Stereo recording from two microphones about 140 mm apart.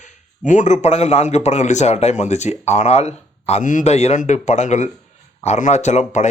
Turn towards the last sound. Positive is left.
turn(degrees=55)  # may be behind; listen again after turning